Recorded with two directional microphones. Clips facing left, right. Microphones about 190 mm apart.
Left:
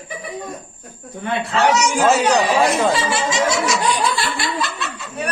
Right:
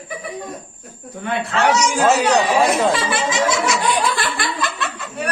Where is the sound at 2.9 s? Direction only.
55° right (ahead or behind).